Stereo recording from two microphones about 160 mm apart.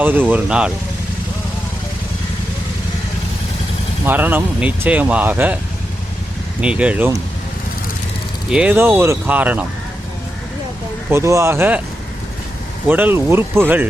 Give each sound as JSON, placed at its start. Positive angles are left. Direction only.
{"t": 0.0, "sound": "speech", "side_deg": -10}
{"t": 4.0, "sound": "speech", "side_deg": -10}
{"t": 6.6, "sound": "speech", "side_deg": -5}
{"t": 8.4, "sound": "speech", "side_deg": -5}
{"t": 11.1, "sound": "speech", "side_deg": -20}
{"t": 12.9, "sound": "speech", "side_deg": -10}